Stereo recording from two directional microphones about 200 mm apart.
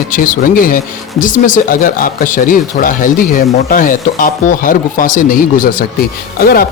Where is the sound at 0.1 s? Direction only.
45° left (ahead or behind).